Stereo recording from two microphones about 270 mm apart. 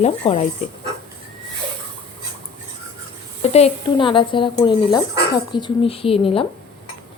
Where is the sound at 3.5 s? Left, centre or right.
Left.